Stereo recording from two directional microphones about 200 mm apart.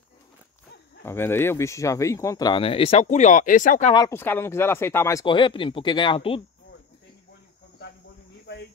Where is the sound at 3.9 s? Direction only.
15° left (ahead or behind).